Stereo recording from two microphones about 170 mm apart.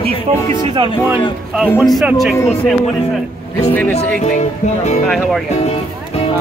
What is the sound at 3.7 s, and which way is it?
Speech, 10° left (ahead or behind).